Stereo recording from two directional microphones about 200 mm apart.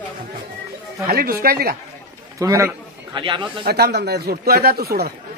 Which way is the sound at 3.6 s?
50° right (ahead or behind).